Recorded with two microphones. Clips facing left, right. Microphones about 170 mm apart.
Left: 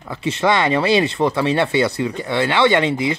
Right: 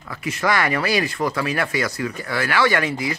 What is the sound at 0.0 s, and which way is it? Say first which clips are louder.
Speech: left 5 dB; 25° left (ahead or behind).